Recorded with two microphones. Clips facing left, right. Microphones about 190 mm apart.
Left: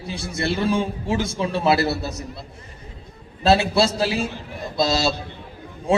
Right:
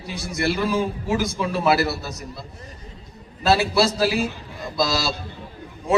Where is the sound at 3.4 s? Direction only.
25° left (ahead or behind).